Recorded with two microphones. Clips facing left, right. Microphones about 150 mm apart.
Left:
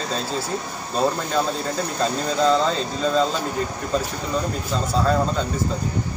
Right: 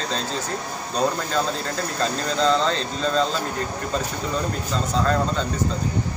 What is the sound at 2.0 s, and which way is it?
A man's voice, 10° left (ahead or behind).